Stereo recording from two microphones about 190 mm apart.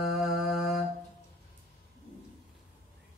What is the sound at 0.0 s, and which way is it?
Mantra, centre (ahead or behind).